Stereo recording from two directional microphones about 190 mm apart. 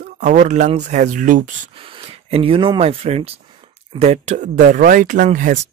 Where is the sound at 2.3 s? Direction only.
30° right (ahead or behind).